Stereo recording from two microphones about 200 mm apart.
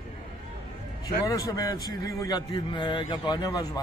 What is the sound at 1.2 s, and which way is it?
A man's voice, 15° left (ahead or behind).